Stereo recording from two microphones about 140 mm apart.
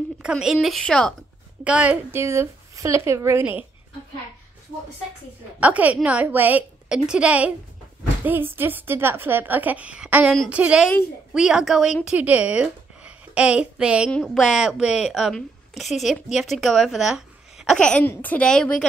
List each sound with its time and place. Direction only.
0.2 s a woman's voice: 5° right (ahead or behind)
1.6 s a woman's voice: 10° right (ahead or behind)
5.6 s a woman's voice: 10° right (ahead or behind)
17.7 s a woman's voice: 5° left (ahead or behind)